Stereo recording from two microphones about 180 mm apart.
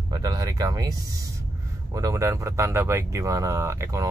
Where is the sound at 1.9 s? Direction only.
20° right (ahead or behind).